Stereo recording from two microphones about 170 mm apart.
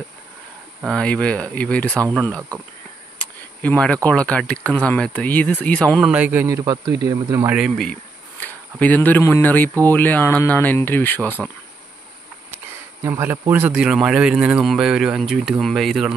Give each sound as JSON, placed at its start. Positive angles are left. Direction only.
{"t": 0.8, "sound": "speech", "side_deg": 5}
{"t": 3.2, "sound": "a man's voice", "side_deg": 5}
{"t": 7.5, "sound": "speech", "side_deg": 0}
{"t": 13.0, "sound": "speech", "side_deg": -15}